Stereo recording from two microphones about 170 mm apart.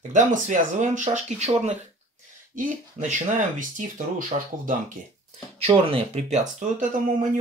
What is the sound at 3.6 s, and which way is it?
Speech, 50° right (ahead or behind).